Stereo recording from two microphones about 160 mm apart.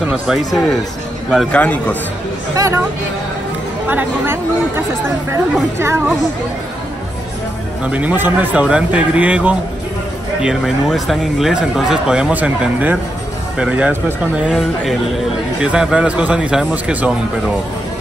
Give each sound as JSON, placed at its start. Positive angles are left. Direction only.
{"t": 0.0, "sound": "a man's voice", "side_deg": -5}
{"t": 2.5, "sound": "speech", "side_deg": -20}
{"t": 3.9, "sound": "a man's voice", "side_deg": -10}
{"t": 7.8, "sound": "a man's voice", "side_deg": -10}